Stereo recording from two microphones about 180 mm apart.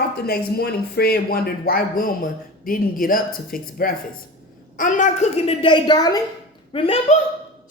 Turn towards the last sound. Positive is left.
turn(degrees=30)  # may be behind; listen again after turning